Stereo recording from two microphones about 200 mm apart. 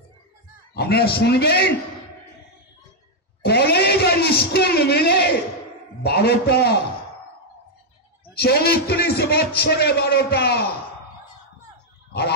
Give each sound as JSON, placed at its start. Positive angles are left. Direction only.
{"t": 0.7, "sound": "a man's voice", "side_deg": 50}
{"t": 3.4, "sound": "a man's voice", "side_deg": 55}
{"t": 8.4, "sound": "a man's voice", "side_deg": 50}